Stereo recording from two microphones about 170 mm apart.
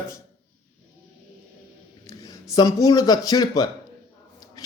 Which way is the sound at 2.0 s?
20° left (ahead or behind).